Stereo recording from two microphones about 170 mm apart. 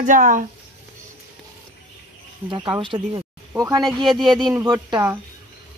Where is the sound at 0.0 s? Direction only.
50° right (ahead or behind).